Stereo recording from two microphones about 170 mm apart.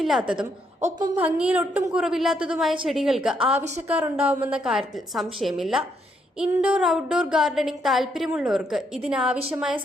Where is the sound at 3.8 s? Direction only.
10° right (ahead or behind).